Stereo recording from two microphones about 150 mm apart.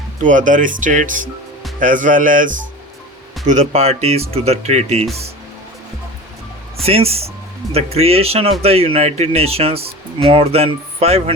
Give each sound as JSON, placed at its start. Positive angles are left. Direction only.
{"t": 0.2, "sound": "speech", "side_deg": -60}
{"t": 6.8, "sound": "speech", "side_deg": -40}